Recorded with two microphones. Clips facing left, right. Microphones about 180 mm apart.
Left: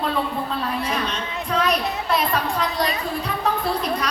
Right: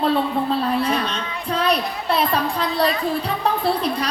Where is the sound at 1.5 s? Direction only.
30° right (ahead or behind).